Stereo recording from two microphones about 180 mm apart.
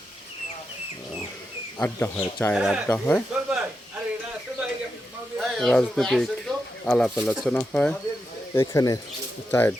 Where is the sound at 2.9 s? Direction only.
10° left (ahead or behind).